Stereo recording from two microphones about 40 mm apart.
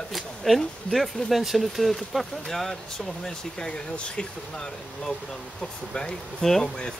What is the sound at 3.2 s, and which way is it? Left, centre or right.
Speech, left.